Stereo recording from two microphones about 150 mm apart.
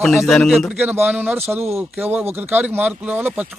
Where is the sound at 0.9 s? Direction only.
10° right (ahead or behind).